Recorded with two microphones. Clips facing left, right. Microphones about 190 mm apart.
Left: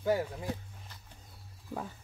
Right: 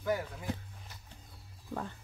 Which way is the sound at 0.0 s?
30° left (ahead or behind).